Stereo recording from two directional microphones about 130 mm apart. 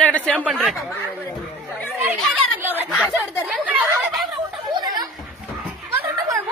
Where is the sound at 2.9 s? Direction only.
10° right (ahead or behind).